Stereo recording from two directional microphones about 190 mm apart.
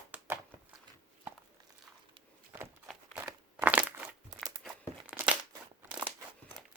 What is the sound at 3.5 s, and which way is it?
Crushing, 10° right (ahead or behind).